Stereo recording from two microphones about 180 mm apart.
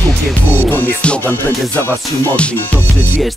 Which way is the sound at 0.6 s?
10° left (ahead or behind).